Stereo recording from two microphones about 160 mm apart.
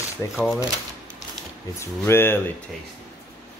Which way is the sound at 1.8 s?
15° left (ahead or behind).